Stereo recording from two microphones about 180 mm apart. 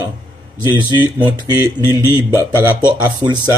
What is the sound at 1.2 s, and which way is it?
A man's voice, 20° right (ahead or behind).